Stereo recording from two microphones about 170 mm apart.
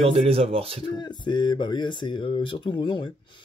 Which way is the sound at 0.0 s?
35° right (ahead or behind).